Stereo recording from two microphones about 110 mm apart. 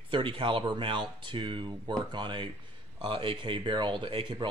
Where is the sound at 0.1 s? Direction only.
50° right (ahead or behind).